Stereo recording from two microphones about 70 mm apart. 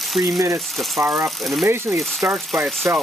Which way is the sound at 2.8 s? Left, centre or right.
Right.